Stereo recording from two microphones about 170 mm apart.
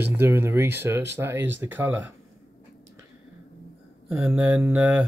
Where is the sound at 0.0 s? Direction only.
15° right (ahead or behind).